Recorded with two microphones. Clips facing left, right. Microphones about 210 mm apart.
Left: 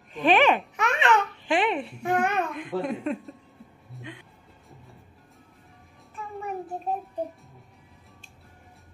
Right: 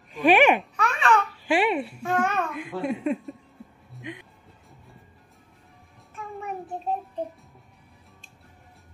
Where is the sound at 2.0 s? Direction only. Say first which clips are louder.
Left 3 dB; 15° left (ahead or behind).